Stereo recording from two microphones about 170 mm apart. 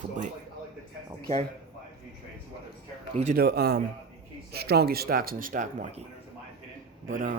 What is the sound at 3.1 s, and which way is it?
Speech, 40° right (ahead or behind).